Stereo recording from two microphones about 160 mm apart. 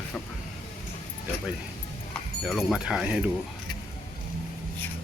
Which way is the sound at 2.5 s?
Centre (ahead or behind).